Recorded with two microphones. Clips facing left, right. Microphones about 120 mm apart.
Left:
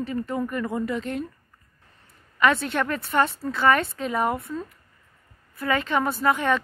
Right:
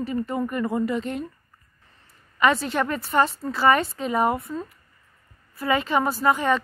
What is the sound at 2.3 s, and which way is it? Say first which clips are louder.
A woman's voice: right 1 dB; centre (ahead or behind).